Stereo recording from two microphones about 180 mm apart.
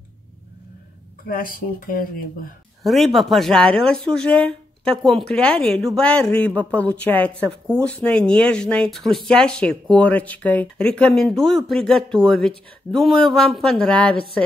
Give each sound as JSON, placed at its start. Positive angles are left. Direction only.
{"t": 1.2, "sound": "speech", "side_deg": 50}
{"t": 2.8, "sound": "speech", "side_deg": 0}